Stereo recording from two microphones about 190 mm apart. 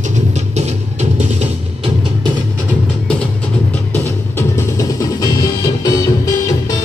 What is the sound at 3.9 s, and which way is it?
Music, 15° left (ahead or behind).